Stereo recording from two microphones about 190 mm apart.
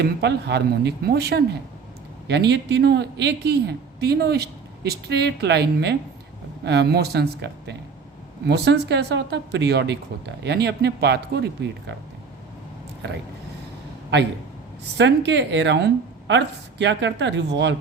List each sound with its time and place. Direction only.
0.0 s a woman's voice: 65° right (ahead or behind)
14.9 s a woman's voice: 70° right (ahead or behind)